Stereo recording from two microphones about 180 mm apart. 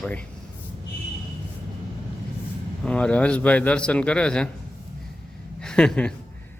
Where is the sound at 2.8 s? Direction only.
5° left (ahead or behind).